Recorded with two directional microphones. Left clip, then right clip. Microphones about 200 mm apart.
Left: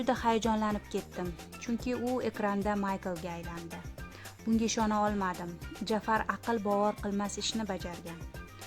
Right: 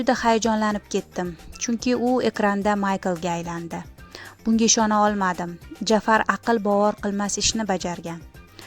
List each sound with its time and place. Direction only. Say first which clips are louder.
0.0 s a woman's voice: right 9 dB; 25° right (ahead or behind)